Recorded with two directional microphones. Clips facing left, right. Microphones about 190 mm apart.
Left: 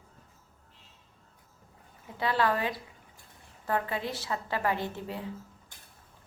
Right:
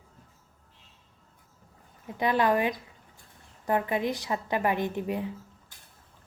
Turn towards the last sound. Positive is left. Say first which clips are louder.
# right 6 dB
turn(degrees=-15)  # may be behind; listen again after turning